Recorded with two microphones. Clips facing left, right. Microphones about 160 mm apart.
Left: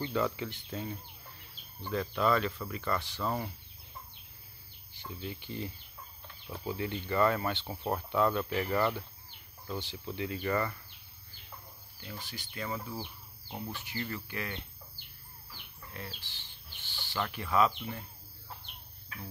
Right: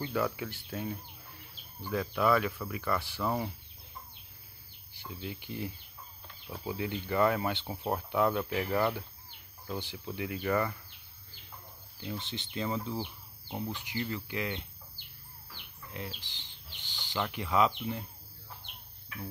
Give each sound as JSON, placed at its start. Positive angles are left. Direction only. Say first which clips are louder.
{"t": 0.0, "sound": "speech", "louder": "even", "side_deg": -5}
{"t": 4.9, "sound": "speech", "louder": "even", "side_deg": -10}
{"t": 12.0, "sound": "speech", "louder": "right 6 dB", "side_deg": -20}
{"t": 15.9, "sound": "speech", "louder": "right 3 dB", "side_deg": -15}